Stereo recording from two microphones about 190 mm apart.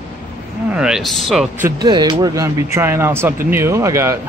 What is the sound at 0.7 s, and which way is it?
Speech, 5° right (ahead or behind).